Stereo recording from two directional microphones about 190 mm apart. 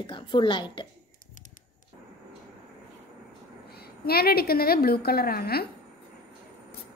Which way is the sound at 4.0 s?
55° left (ahead or behind).